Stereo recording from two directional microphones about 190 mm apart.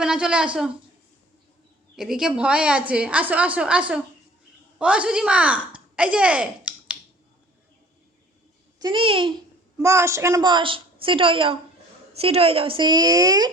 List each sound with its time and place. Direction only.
0.0 s a woman's voice: 5° right (ahead or behind)
2.0 s a woman's voice: 5° right (ahead or behind)
8.8 s a woman's voice: 25° right (ahead or behind)
9.7 s a woman's voice: 15° right (ahead or behind)